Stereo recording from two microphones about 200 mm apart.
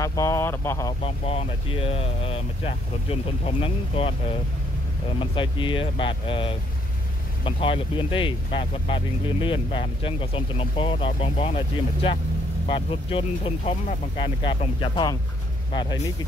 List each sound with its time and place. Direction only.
0.0 s speech: 15° left (ahead or behind)
1.0 s speech: 30° left (ahead or behind)